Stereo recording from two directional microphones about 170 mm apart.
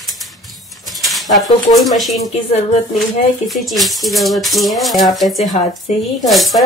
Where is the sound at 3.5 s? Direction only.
Centre (ahead or behind).